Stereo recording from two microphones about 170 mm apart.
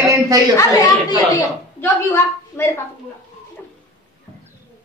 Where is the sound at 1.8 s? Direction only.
15° left (ahead or behind).